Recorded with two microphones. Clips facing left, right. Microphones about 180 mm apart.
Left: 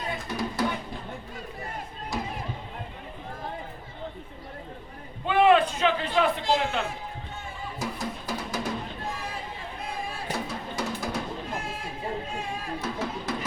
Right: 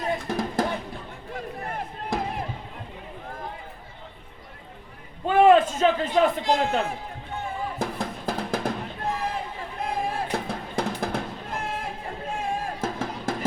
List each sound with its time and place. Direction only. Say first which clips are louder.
0.0 s music: right 4 dB; 50° right (ahead or behind)
1.6 s chop: right 4 dB; 55° right (ahead or behind)
5.2 s a sound: right 3 dB; 45° right (ahead or behind)
6.5 s a man's voice: right 3 dB; 50° right (ahead or behind)
7.3 s music: right 9 dB; 55° right (ahead or behind)
9.8 s music: right 7 dB; 55° right (ahead or behind)